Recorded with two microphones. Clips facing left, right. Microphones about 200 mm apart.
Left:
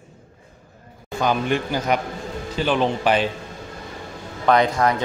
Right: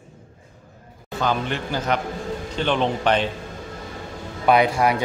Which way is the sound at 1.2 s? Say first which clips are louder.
Left 3 dB; 10° left (ahead or behind).